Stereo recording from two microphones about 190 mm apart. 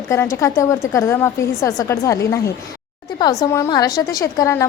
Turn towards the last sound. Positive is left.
turn(degrees=15)  # may be behind; listen again after turning